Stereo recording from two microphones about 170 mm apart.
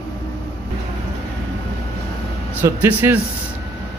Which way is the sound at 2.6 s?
10° right (ahead or behind).